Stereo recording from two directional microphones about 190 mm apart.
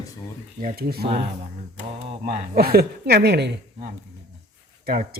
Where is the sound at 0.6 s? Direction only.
55° right (ahead or behind).